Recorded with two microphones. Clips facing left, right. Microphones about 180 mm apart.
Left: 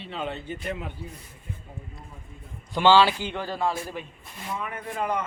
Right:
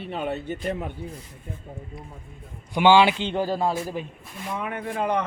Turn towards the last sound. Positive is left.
turn(degrees=-70)  # may be behind; listen again after turning